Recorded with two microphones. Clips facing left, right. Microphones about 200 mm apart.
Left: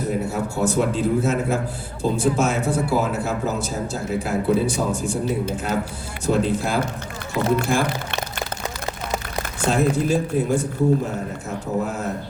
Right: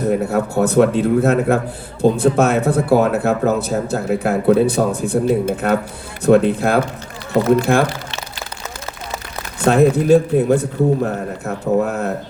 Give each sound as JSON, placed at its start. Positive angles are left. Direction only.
{"t": 0.3, "sound": "a man's voice", "side_deg": -60}
{"t": 9.6, "sound": "a man's voice", "side_deg": -60}